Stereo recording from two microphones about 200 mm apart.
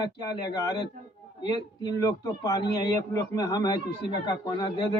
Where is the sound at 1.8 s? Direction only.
20° left (ahead or behind).